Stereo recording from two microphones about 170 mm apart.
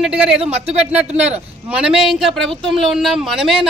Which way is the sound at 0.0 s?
5° right (ahead or behind).